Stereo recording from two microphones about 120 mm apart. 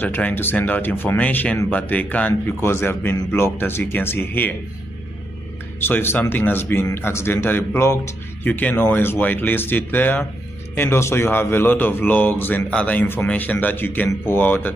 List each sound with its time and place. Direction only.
0.0 s a man's voice: 15° left (ahead or behind)
5.8 s a man's voice: 15° left (ahead or behind)